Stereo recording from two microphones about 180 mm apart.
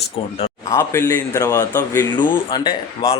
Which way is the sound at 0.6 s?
15° left (ahead or behind).